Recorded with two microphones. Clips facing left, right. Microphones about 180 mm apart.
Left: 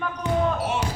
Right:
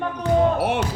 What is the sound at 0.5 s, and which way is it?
Speech, 60° right (ahead or behind).